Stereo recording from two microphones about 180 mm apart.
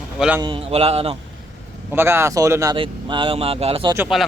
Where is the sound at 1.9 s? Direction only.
15° right (ahead or behind).